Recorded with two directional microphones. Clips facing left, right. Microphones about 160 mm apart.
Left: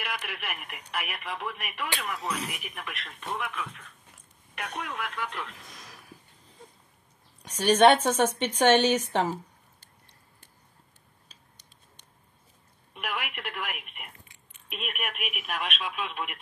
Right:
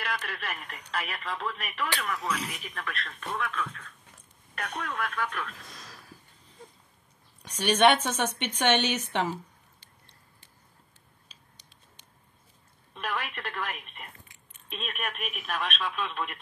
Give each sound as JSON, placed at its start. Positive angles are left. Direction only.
{"t": 0.0, "sound": "speech", "side_deg": 15}
{"t": 7.5, "sound": "a woman's voice", "side_deg": 40}
{"t": 12.9, "sound": "speech", "side_deg": 15}